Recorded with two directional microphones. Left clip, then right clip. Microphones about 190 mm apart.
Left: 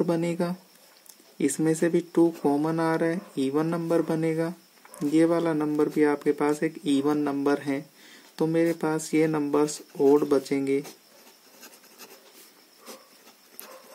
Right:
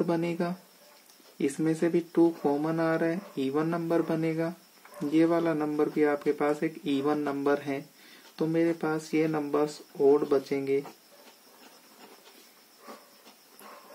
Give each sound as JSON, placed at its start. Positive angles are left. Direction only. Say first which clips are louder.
{"t": 0.0, "sound": "speech", "louder": "left 3 dB", "side_deg": 30}